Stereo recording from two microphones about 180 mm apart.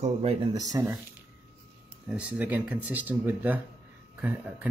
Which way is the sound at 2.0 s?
5° right (ahead or behind).